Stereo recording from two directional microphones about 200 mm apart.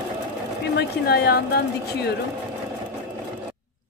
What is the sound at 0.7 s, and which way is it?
A woman's voice, 55° left (ahead or behind).